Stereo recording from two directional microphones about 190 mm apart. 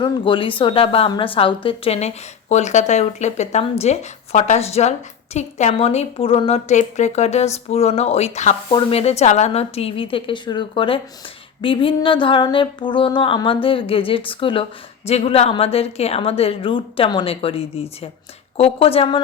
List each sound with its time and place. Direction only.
0.0 s a woman's voice: 25° left (ahead or behind)
8.7 s a sound: 30° left (ahead or behind)
18.5 s a woman's voice: 30° left (ahead or behind)